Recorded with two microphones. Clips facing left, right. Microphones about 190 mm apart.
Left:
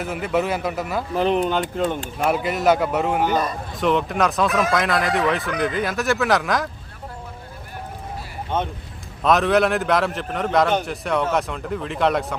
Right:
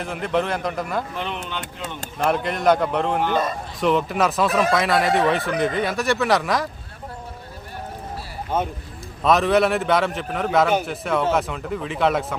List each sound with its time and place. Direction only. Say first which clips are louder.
0.0 s a man's voice: left 1 dB; 5° left (ahead or behind)
1.1 s speech: left 10 dB; 40° left (ahead or behind)
2.1 s a man's voice: right 3 dB; 5° left (ahead or behind)
8.4 s a man's voice: right 1 dB; 5° right (ahead or behind)